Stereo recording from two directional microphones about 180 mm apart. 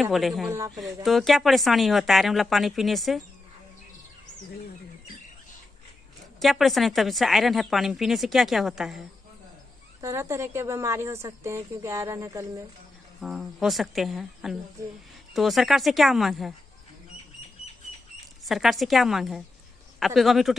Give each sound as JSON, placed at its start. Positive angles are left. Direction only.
{"t": 0.0, "sound": "speech", "side_deg": 0}
{"t": 0.5, "sound": "a woman's voice", "side_deg": -15}
{"t": 1.0, "sound": "speech", "side_deg": 0}
{"t": 6.4, "sound": "speech", "side_deg": 0}
{"t": 10.0, "sound": "a woman's voice", "side_deg": -15}
{"t": 13.2, "sound": "speech", "side_deg": 0}
{"t": 18.4, "sound": "speech", "side_deg": 0}